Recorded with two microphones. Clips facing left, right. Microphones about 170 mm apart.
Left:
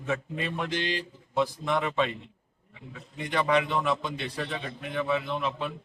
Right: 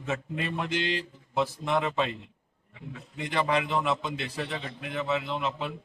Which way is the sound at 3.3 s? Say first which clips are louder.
Left 2 dB; 5° right (ahead or behind).